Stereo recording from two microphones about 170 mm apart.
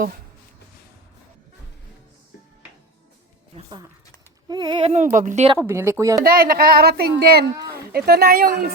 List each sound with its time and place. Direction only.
4.4 s a sound: 25° right (ahead or behind)
5.1 s speech: 45° right (ahead or behind)
5.5 s speech: 15° right (ahead or behind)
6.2 s speech: 60° right (ahead or behind)